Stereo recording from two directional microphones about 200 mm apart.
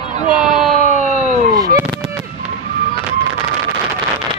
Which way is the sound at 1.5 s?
20° right (ahead or behind).